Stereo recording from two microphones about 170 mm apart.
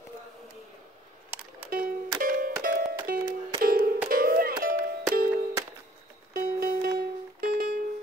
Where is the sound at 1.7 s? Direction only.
55° right (ahead or behind).